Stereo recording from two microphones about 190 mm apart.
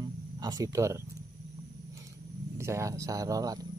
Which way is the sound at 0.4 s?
20° right (ahead or behind).